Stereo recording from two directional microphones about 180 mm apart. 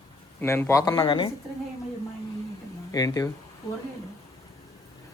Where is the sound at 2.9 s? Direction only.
20° left (ahead or behind).